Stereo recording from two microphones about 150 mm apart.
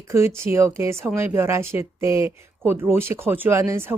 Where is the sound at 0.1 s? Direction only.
20° right (ahead or behind).